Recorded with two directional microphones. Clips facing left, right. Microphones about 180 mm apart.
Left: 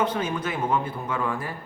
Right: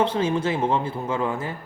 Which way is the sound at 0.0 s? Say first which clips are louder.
Right 4 dB; 30° right (ahead or behind).